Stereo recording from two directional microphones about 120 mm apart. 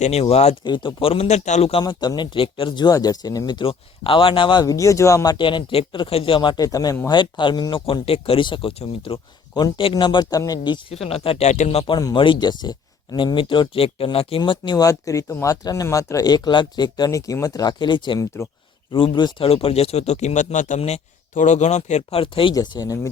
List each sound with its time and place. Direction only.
0.0 s speech: 60° left (ahead or behind)
0.6 s speech: 40° left (ahead or behind); by 1.7 s 75° left (ahead or behind)
1.8 s speech: 35° left (ahead or behind)
3.7 s speech: 50° left (ahead or behind)
4.6 s speech: 25° left (ahead or behind)
6.7 s speech: 30° left (ahead or behind)
7.1 s speech: 40° left (ahead or behind)
10.9 s speech: 55° left (ahead or behind)
11.9 s speech: 40° left (ahead or behind); by 22.2 s 70° left (ahead or behind)
22.2 s speech: 45° left (ahead or behind)
22.5 s speech: 35° left (ahead or behind)